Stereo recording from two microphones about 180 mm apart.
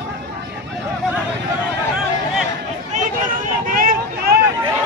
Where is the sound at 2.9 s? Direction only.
50° right (ahead or behind).